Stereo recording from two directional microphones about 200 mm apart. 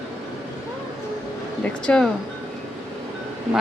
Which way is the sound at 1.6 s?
5° left (ahead or behind).